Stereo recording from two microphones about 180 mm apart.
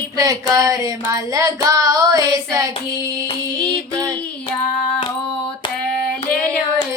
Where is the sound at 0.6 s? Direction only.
20° right (ahead or behind).